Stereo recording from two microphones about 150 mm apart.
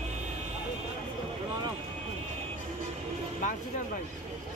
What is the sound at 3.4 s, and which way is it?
Vehicle, 55° left (ahead or behind).